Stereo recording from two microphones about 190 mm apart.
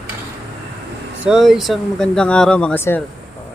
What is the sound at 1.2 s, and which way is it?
Speech, 5° right (ahead or behind).